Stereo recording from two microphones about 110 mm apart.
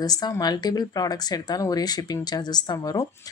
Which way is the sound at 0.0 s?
35° left (ahead or behind).